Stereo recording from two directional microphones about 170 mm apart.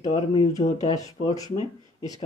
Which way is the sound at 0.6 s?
45° left (ahead or behind).